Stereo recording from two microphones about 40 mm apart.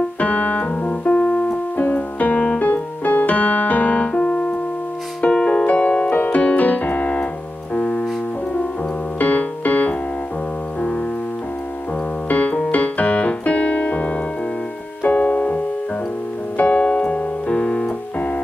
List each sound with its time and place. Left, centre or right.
0.2 s keyboard: left
0.8 s keyboard: left
1.8 s piano: left
2.6 s music: left
4.1 s keyboard: centre
5.3 s piano: left
9.2 s piano: left
12.3 s piano: left
12.7 s keyboard: left
15.0 s music: left
16.5 s piano: left